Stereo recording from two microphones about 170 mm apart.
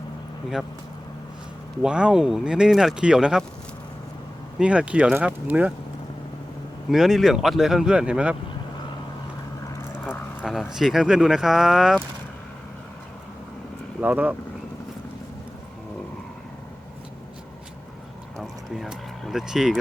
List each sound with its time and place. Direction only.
1.8 s speech: 5° right (ahead or behind)
4.6 s speech: 5° right (ahead or behind)
6.9 s speech: centre (ahead or behind)
10.4 s speech: centre (ahead or behind)
14.0 s speech: 10° right (ahead or behind)
18.3 s a sound: centre (ahead or behind)